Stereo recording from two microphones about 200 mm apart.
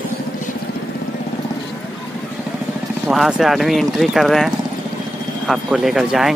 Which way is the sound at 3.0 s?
Centre (ahead or behind).